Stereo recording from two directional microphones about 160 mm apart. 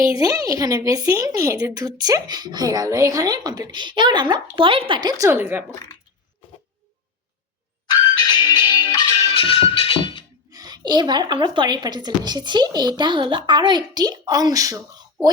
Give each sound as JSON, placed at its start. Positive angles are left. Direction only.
{"t": 0.0, "sound": "speech", "side_deg": -20}
{"t": 7.9, "sound": "music", "side_deg": 25}
{"t": 9.3, "sound": "music", "side_deg": 35}
{"t": 10.5, "sound": "speech", "side_deg": -25}